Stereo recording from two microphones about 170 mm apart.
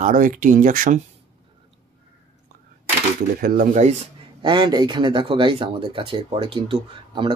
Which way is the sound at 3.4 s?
50° right (ahead or behind).